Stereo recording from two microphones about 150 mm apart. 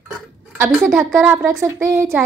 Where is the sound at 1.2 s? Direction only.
15° right (ahead or behind).